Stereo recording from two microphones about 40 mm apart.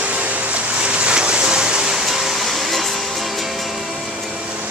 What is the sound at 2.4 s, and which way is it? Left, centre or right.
Music, centre.